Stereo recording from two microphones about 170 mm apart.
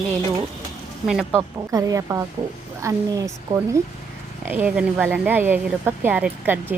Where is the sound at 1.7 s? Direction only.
20° right (ahead or behind).